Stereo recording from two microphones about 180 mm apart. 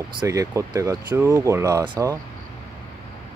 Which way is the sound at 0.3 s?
15° right (ahead or behind).